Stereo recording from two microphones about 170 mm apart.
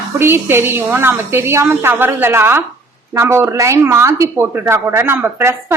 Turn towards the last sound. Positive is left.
turn(degrees=-15)  # may be behind; listen again after turning